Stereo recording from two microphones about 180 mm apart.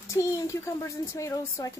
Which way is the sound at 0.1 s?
15° left (ahead or behind).